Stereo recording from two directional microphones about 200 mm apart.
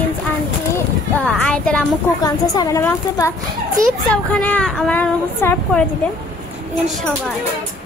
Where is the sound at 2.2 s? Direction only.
20° left (ahead or behind).